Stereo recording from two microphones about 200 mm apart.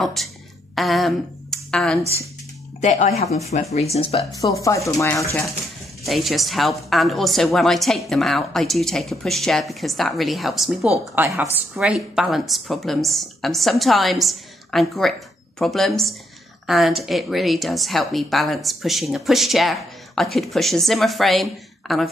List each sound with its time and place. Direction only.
0.0 s speech: centre (ahead or behind)
0.7 s a sound: centre (ahead or behind)
2.8 s speech: 35° left (ahead or behind)
4.4 s speech: 15° left (ahead or behind)
6.0 s a woman's voice: centre (ahead or behind)